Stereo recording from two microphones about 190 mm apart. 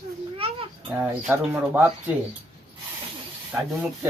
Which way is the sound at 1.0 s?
10° right (ahead or behind).